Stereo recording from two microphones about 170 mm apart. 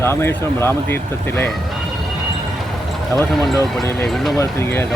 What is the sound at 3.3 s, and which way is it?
Speech, centre (ahead or behind).